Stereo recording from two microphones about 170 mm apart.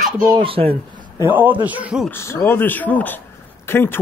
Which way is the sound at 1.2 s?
10° right (ahead or behind).